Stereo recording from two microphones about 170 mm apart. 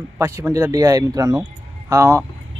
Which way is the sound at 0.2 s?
15° right (ahead or behind).